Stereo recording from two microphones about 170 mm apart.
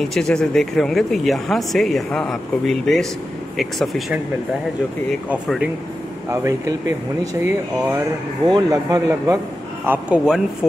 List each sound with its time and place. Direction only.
0.0 s speech: 5° left (ahead or behind)
5.3 s speech: 5° right (ahead or behind)
9.8 s speech: 5° right (ahead or behind)